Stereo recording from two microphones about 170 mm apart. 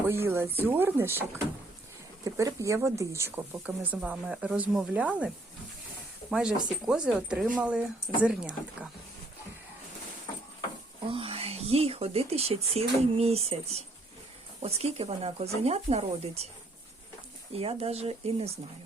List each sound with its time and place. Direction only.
0.1 s speech: 15° right (ahead or behind)
2.2 s speech: 20° right (ahead or behind)
6.8 s speech: 5° right (ahead or behind)
11.1 s speech: 35° right (ahead or behind)
17.5 s speech: 35° right (ahead or behind)